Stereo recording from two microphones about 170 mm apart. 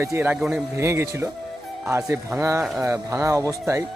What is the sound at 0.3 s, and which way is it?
Speech, centre (ahead or behind).